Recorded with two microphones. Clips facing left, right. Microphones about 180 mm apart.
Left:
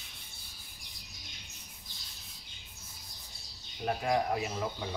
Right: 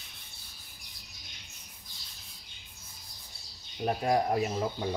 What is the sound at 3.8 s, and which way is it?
Speech, 35° right (ahead or behind).